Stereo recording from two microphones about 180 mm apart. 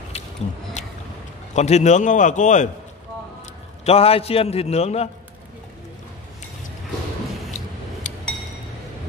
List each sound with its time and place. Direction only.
0.1 s a sound: 35° left (ahead or behind)
0.8 s boat: 40° left (ahead or behind)
1.5 s a man's voice: 40° left (ahead or behind)
3.8 s a man's voice: 35° left (ahead or behind)
8.0 s chink: 45° left (ahead or behind)